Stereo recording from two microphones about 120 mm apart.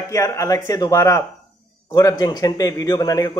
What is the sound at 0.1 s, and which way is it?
Speech, 25° left (ahead or behind).